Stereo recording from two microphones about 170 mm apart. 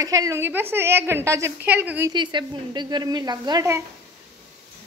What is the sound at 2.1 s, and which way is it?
A woman's voice, 25° right (ahead or behind).